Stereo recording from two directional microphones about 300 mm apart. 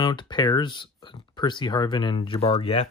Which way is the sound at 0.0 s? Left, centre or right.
Centre.